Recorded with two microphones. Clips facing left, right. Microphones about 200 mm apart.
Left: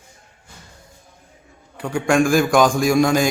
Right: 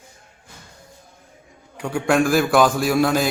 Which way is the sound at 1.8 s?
5° right (ahead or behind).